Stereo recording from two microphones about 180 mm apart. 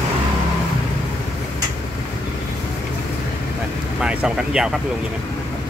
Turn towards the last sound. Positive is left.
turn(degrees=-5)  # may be behind; listen again after turning